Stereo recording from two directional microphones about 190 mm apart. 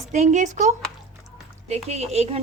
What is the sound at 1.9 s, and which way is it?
Speech, 35° right (ahead or behind).